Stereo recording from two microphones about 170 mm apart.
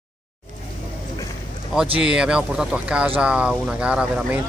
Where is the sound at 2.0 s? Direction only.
5° right (ahead or behind).